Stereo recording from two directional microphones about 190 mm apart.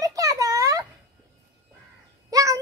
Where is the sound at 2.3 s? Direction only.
15° right (ahead or behind).